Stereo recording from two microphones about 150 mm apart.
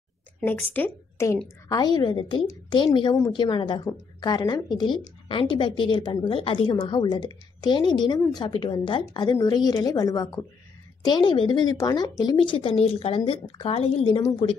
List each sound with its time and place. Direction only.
0.4 s a woman's voice: 10° left (ahead or behind); by 14.2 s 35° left (ahead or behind)